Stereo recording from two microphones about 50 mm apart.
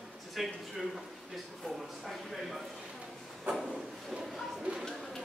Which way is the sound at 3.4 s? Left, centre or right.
Centre.